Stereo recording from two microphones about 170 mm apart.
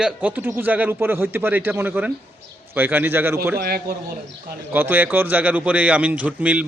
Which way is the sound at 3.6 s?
65° right (ahead or behind).